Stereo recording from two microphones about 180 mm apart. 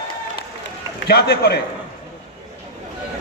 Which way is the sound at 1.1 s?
65° left (ahead or behind).